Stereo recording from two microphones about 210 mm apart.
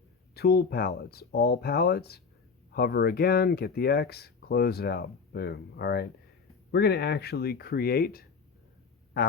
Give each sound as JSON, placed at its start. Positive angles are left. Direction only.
{"t": 0.3, "sound": "speech", "side_deg": 50}